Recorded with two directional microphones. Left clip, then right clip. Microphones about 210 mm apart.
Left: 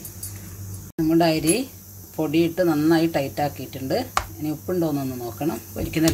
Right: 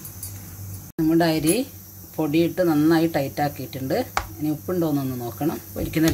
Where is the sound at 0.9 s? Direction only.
10° right (ahead or behind).